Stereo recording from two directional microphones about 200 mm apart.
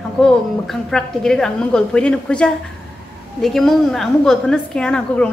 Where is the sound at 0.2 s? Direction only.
5° left (ahead or behind).